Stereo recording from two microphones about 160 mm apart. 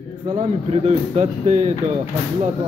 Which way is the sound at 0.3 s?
40° right (ahead or behind).